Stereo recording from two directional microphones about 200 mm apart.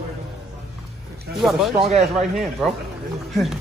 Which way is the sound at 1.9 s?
35° right (ahead or behind).